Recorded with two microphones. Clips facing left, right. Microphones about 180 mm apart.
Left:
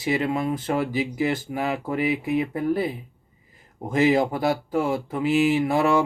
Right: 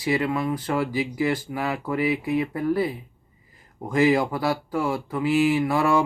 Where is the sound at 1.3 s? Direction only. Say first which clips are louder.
Left 1 dB; 50° left (ahead or behind).